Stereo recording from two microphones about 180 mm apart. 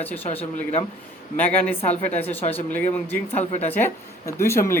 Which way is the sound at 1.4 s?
10° left (ahead or behind).